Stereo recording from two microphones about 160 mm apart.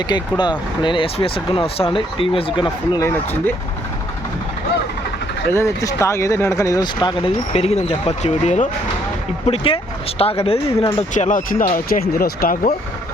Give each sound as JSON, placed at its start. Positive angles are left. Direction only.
{"t": 0.1, "sound": "speech", "side_deg": 30}
{"t": 5.5, "sound": "speech", "side_deg": 15}
{"t": 9.5, "sound": "speech", "side_deg": 35}
{"t": 11.1, "sound": "speech", "side_deg": 50}